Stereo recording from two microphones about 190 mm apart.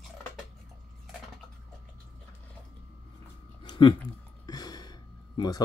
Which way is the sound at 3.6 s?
25° left (ahead or behind).